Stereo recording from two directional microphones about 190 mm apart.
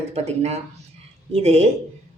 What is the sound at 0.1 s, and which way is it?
Speech, 35° right (ahead or behind).